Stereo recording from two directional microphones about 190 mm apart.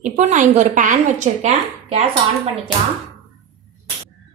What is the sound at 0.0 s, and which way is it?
A woman's voice, 40° right (ahead or behind).